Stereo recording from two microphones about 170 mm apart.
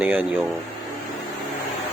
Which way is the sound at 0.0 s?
5° right (ahead or behind).